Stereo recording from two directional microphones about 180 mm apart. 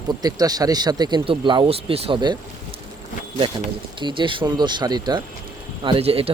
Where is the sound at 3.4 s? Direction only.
25° right (ahead or behind).